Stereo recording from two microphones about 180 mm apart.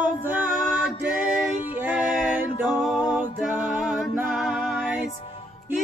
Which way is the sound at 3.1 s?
10° right (ahead or behind).